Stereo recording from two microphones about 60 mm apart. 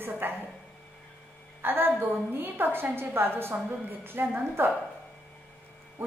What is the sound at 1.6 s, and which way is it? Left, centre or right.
A woman's voice, right.